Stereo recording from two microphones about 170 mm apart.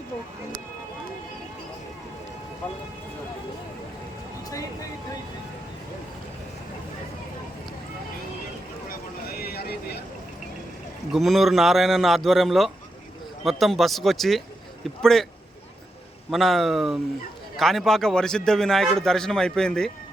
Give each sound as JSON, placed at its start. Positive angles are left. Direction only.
{"t": 8.9, "sound": "a sound", "side_deg": 65}
{"t": 11.1, "sound": "a man's voice", "side_deg": 0}
{"t": 16.3, "sound": "a man's voice", "side_deg": 0}